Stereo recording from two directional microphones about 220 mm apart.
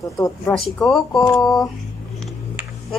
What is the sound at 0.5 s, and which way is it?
Speech, centre (ahead or behind).